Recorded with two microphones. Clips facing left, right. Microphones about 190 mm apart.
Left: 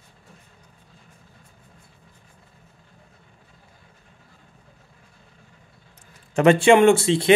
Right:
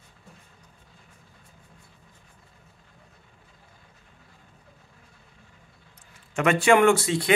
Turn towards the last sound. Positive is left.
turn(degrees=25)  # may be behind; listen again after turning